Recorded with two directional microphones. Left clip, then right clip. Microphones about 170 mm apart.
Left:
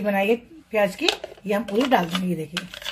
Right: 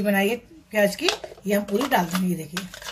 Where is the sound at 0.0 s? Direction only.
45° left (ahead or behind).